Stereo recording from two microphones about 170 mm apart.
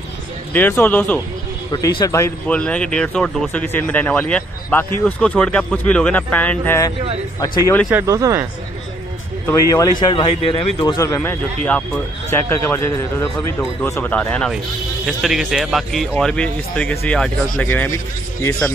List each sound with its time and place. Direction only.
0.5 s a man's voice: 10° left (ahead or behind)
7.9 s speech: 20° right (ahead or behind)
9.5 s a man's voice: 20° left (ahead or behind)
15.0 s speech: centre (ahead or behind); by 18.5 s 15° left (ahead or behind)